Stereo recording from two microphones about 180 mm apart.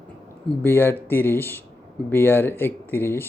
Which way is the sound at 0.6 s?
10° left (ahead or behind).